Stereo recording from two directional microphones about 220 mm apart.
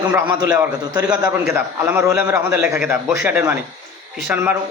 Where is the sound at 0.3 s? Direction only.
20° right (ahead or behind).